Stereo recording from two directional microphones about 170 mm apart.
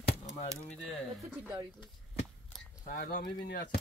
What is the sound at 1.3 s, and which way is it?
Speech, 10° right (ahead or behind).